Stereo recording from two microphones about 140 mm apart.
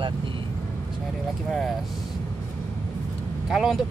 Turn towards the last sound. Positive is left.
turn(degrees=0)  # may be behind; listen again after turning